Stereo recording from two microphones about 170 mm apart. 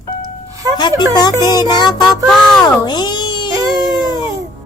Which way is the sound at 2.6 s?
25° left (ahead or behind).